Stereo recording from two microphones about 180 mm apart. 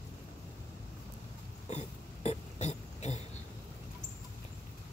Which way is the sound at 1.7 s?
40° left (ahead or behind).